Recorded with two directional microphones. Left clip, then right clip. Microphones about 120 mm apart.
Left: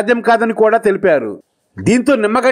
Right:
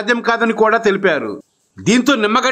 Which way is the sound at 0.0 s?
40° left (ahead or behind).